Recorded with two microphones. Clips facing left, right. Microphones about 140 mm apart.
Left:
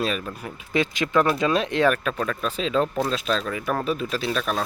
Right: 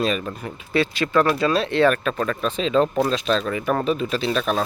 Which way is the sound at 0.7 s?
15° left (ahead or behind).